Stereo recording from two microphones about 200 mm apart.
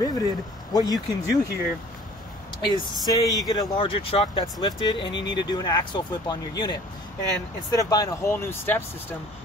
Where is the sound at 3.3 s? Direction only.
20° left (ahead or behind).